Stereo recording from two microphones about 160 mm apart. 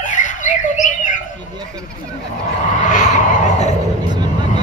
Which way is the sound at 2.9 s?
45° left (ahead or behind).